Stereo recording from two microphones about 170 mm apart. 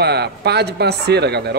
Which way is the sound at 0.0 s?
75° right (ahead or behind).